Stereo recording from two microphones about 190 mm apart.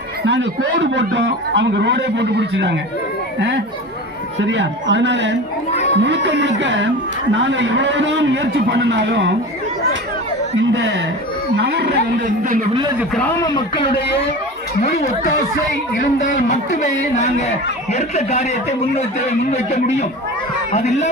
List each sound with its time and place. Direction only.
0.3 s a man's voice: 70° right (ahead or behind)
4.4 s a man's voice: 70° right (ahead or behind)
5.7 s a sound: 35° left (ahead or behind)
6.0 s a man's voice: 70° right (ahead or behind)
10.6 s a man's voice: 70° right (ahead or behind)
13.4 s speech: 25° left (ahead or behind)
19.5 s speech: 35° left (ahead or behind)